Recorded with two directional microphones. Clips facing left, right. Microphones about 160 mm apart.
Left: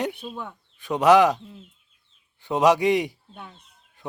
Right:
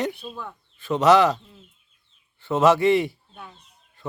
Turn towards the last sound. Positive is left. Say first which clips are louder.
# right 2 dB
turn(degrees=15)  # may be behind; listen again after turning